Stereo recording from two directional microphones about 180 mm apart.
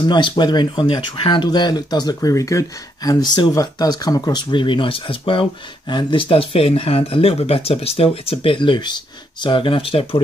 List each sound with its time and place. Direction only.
0.0 s speech: 25° left (ahead or behind)